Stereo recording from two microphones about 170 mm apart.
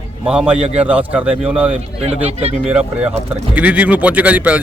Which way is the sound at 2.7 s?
5° right (ahead or behind).